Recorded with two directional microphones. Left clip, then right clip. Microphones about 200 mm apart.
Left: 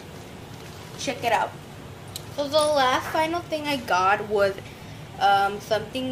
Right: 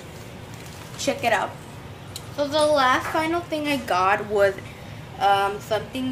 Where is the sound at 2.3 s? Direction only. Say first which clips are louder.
Right 1 dB; 20° left (ahead or behind).